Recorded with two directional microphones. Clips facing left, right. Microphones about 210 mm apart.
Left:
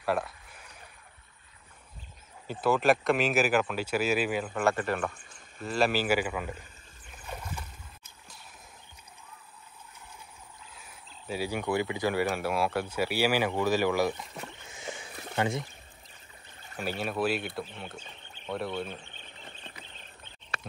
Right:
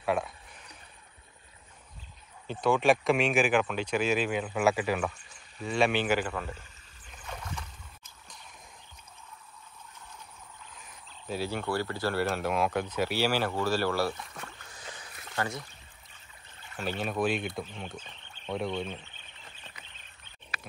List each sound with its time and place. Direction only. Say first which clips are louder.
0.0 s a sound: even; centre (ahead or behind)
2.4 s speech: even; 5° left (ahead or behind)
7.1 s boat: left 1 dB; 5° left (ahead or behind)
10.7 s speech: even; 5° left (ahead or behind)
14.3 s a sound: left 3 dB; 20° left (ahead or behind)
15.3 s speech: left 4 dB; 20° left (ahead or behind)
16.7 s speech: even; 10° left (ahead or behind)